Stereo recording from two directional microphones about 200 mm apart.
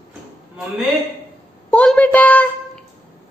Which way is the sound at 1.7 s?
5° left (ahead or behind).